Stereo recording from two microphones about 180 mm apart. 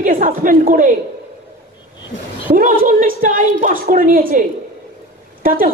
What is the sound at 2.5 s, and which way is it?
A man's voice, 50° right (ahead or behind).